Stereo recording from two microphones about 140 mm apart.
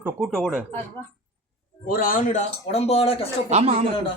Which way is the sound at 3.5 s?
50° right (ahead or behind).